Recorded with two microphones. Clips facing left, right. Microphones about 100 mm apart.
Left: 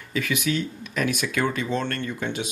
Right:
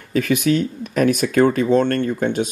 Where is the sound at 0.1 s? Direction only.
45° right (ahead or behind).